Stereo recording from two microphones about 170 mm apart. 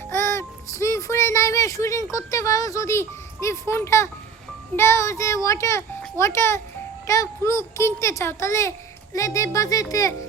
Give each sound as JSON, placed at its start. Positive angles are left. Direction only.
{"t": 0.1, "sound": "music", "side_deg": 15}
{"t": 2.1, "sound": "speech", "side_deg": 20}